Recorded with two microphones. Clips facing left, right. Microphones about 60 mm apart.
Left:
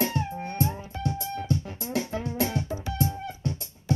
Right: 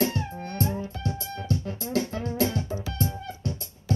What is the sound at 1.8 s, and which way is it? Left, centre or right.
Music, centre.